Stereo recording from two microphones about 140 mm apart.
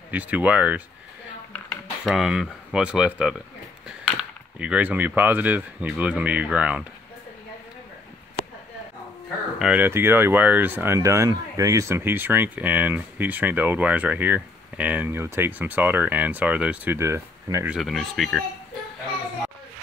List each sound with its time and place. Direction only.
0.1 s speech: 10° right (ahead or behind)
2.0 s speech: 5° right (ahead or behind)
9.6 s speech: 10° right (ahead or behind)
17.6 s speech: centre (ahead or behind)